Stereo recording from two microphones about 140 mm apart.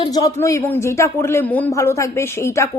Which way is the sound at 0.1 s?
25° left (ahead or behind).